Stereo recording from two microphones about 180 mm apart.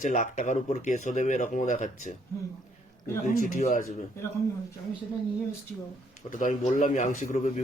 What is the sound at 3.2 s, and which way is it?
Speech, 45° left (ahead or behind).